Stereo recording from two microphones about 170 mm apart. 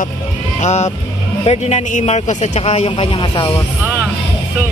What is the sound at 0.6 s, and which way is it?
A man's voice, 40° left (ahead or behind).